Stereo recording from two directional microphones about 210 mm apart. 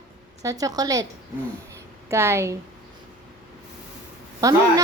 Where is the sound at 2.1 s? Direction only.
10° right (ahead or behind).